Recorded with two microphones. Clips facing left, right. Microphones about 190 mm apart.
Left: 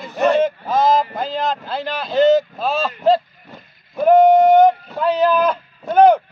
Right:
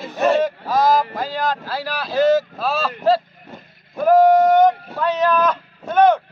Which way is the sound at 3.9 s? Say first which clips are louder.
Left 2 dB; 25° left (ahead or behind).